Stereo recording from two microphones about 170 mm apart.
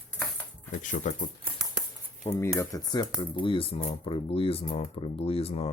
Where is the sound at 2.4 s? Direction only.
20° left (ahead or behind); by 5.7 s 35° left (ahead or behind).